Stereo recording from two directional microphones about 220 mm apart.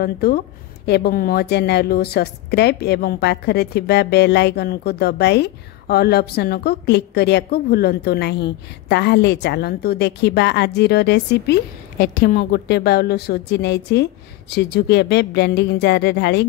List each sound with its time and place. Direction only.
0.0 s a woman's voice: 45° left (ahead or behind)